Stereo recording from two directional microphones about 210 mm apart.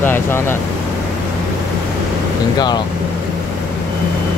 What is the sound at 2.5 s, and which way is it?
Speech, 20° left (ahead or behind).